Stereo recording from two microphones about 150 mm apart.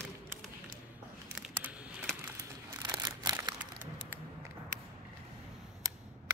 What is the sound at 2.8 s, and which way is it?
Crumpling, 25° right (ahead or behind).